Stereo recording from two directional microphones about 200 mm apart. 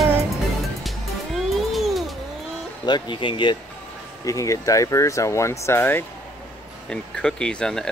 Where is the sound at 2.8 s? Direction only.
25° left (ahead or behind).